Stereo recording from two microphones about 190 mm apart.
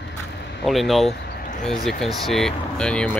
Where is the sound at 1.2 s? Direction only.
50° left (ahead or behind).